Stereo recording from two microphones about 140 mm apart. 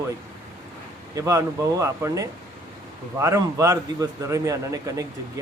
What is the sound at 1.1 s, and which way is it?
A man's voice, 25° right (ahead or behind).